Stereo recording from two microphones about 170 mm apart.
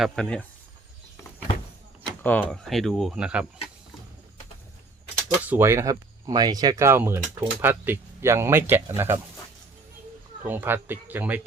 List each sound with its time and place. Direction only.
0.0 s speech: 5° left (ahead or behind)
2.2 s speech: 10° left (ahead or behind)
5.5 s speech: 15° right (ahead or behind)
10.4 s speech: 10° right (ahead or behind)